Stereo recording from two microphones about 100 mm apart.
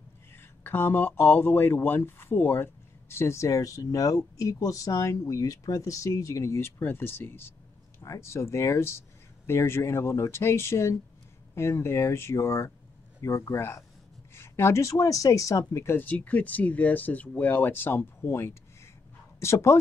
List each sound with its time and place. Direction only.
0.4 s speech: 25° left (ahead or behind)